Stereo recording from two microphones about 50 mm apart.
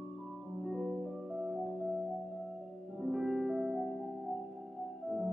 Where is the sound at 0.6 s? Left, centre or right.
Centre.